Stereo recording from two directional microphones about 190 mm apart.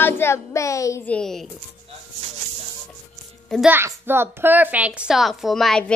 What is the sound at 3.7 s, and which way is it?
A woman's voice, 10° right (ahead or behind).